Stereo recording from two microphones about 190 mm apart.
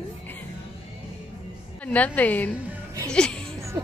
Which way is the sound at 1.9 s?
10° left (ahead or behind).